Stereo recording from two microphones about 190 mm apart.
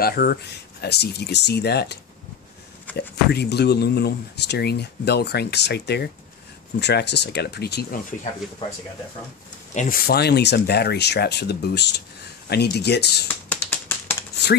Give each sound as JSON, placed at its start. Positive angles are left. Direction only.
{"t": 0.0, "sound": "speech", "side_deg": 55}
{"t": 2.9, "sound": "a sound", "side_deg": 10}
{"t": 3.3, "sound": "speech", "side_deg": 60}
{"t": 9.8, "sound": "speech", "side_deg": 50}
{"t": 13.3, "sound": "finger snapping", "side_deg": 10}